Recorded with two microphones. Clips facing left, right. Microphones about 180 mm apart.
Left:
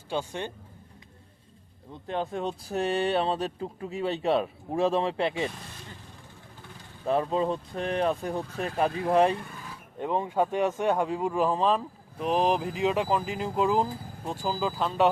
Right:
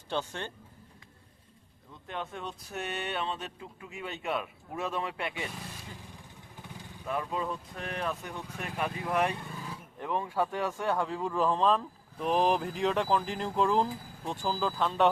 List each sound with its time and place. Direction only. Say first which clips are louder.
0.1 s speech: left 3 dB; 10° left (ahead or behind)
1.9 s speech: left 8 dB; 30° left (ahead or behind)
7.0 s speech: left 8 dB; 30° left (ahead or behind); by 15.1 s 5° left (ahead or behind)